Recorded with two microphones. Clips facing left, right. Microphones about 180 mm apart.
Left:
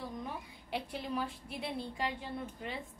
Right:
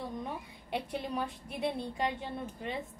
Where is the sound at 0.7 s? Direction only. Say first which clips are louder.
Right 3 dB; 20° right (ahead or behind).